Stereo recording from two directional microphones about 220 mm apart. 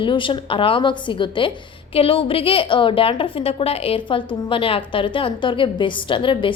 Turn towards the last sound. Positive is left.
turn(degrees=25)  # may be behind; listen again after turning